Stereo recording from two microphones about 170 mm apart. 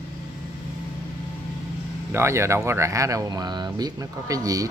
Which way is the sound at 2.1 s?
15° right (ahead or behind).